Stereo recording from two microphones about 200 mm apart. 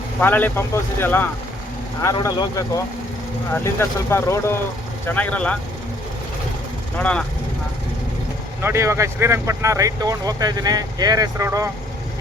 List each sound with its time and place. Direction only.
0.2 s speech: 10° left (ahead or behind)
8.6 s speech: 15° right (ahead or behind)